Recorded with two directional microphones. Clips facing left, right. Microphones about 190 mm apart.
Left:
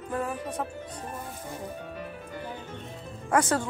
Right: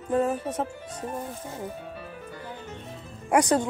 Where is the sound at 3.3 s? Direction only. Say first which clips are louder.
Right 3 dB; 15° right (ahead or behind).